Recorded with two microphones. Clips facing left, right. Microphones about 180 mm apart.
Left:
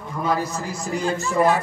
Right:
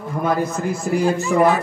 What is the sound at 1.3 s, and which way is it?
Speech, 70° right (ahead or behind).